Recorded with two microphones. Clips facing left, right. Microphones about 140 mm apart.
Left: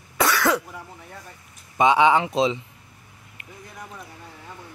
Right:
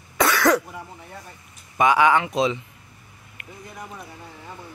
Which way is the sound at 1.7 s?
25° left (ahead or behind).